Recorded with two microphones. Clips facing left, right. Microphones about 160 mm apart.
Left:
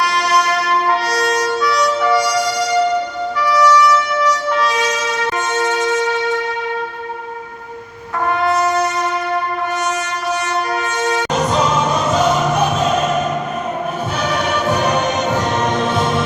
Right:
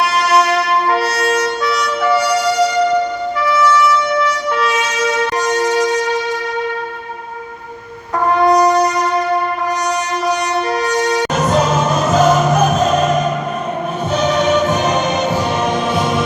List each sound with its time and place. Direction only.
11.5 s music: 50° right (ahead or behind)
14.2 s music: 20° right (ahead or behind)
15.7 s music: 25° left (ahead or behind)